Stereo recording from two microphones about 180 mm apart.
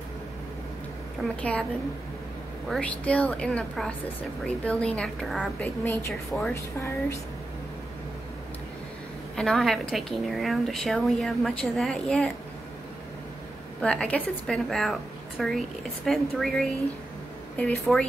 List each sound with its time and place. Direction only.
1.4 s a woman's voice: 5° left (ahead or behind)
2.7 s a woman's voice: 5° left (ahead or behind)
9.3 s a woman's voice: centre (ahead or behind)
13.7 s a woman's voice: 5° left (ahead or behind)